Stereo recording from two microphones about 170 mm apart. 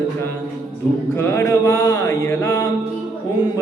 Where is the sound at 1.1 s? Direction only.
15° left (ahead or behind).